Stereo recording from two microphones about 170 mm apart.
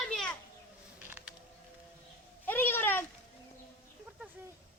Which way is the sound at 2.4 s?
10° left (ahead or behind).